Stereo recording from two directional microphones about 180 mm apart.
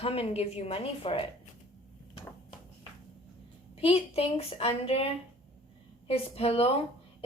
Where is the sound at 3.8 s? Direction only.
35° left (ahead or behind).